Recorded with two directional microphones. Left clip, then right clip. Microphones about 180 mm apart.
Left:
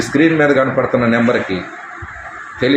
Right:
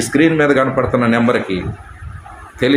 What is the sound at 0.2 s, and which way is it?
Speech, 5° right (ahead or behind).